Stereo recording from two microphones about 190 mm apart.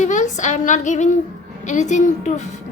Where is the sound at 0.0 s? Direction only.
40° left (ahead or behind).